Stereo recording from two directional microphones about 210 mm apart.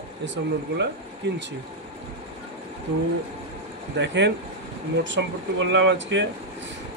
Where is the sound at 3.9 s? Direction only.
60° right (ahead or behind).